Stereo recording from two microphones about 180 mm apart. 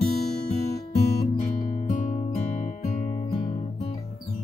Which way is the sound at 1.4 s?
40° left (ahead or behind).